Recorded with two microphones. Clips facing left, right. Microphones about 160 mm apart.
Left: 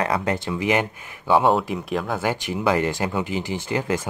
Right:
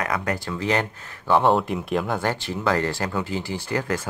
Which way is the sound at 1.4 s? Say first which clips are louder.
Even; centre (ahead or behind).